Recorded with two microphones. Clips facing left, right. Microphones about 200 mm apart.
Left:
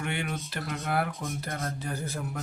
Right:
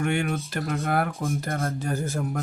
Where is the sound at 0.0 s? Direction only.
45° right (ahead or behind).